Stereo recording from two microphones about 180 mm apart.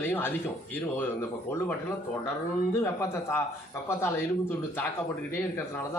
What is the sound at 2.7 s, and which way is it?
Speech, 15° left (ahead or behind).